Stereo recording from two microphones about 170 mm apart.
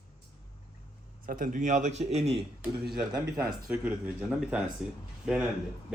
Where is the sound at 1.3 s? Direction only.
50° right (ahead or behind).